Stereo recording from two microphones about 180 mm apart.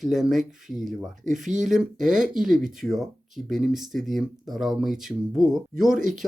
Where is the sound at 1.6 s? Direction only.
Centre (ahead or behind).